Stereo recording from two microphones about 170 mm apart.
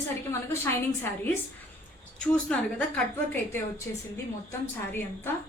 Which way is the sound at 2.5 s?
10° left (ahead or behind).